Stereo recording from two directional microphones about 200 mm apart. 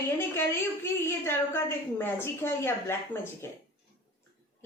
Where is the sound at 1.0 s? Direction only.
10° left (ahead or behind).